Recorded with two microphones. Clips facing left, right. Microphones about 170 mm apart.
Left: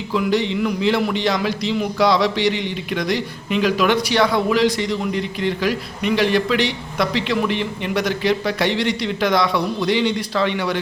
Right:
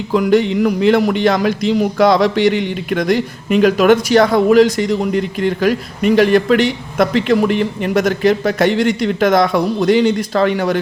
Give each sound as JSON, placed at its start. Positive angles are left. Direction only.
{"t": 0.1, "sound": "speech", "side_deg": -50}